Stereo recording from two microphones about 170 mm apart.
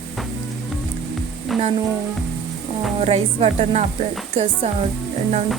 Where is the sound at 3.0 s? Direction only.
40° right (ahead or behind).